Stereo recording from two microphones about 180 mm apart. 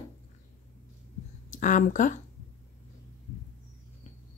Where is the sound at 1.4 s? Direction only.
45° left (ahead or behind).